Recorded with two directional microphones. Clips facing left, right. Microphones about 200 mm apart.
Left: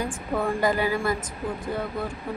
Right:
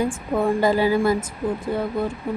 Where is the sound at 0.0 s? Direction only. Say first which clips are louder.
Right 5 dB; 25° right (ahead or behind).